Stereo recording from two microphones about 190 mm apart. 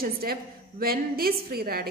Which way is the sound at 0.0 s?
50° right (ahead or behind).